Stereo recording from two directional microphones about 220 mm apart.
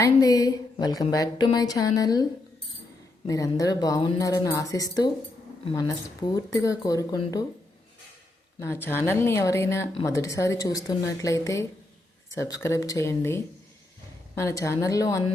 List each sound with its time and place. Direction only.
0.0 s a woman's voice: 15° left (ahead or behind)
3.2 s a woman's voice: 15° left (ahead or behind)
8.5 s a woman's voice: 10° left (ahead or behind)